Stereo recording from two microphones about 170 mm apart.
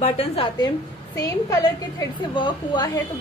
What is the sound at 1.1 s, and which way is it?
A woman's voice, 20° left (ahead or behind).